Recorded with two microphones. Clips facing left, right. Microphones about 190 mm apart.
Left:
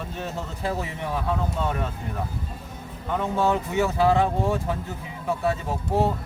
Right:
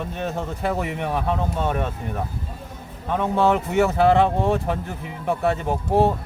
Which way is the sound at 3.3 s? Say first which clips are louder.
Right 4 dB; 65° right (ahead or behind).